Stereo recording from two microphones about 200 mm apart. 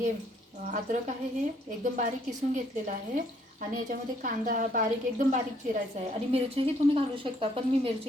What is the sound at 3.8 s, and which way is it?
Speech, 40° right (ahead or behind).